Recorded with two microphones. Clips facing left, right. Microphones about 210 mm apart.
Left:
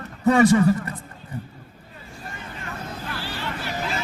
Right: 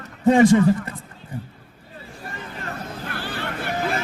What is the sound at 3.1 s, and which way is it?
Hubbub, 55° right (ahead or behind).